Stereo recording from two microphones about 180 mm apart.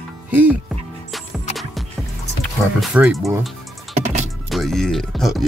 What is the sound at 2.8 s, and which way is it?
Speech, 5° right (ahead or behind).